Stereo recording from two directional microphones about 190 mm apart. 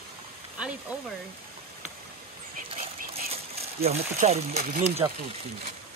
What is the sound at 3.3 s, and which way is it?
Speech, 30° right (ahead or behind).